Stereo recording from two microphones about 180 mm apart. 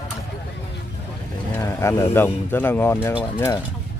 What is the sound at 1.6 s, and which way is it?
Speech, 15° left (ahead or behind).